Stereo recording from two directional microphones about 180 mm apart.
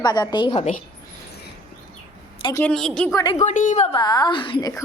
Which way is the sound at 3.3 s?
45° left (ahead or behind).